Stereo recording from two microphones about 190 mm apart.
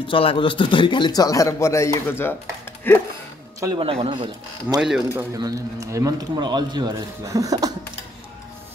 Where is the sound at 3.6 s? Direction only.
25° right (ahead or behind).